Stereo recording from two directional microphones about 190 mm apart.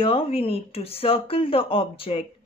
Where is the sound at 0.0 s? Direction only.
30° left (ahead or behind).